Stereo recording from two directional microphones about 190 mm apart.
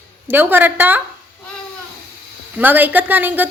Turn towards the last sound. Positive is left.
turn(degrees=-10)  # may be behind; listen again after turning